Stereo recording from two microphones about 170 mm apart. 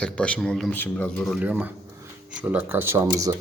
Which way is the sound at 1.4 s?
10° right (ahead or behind).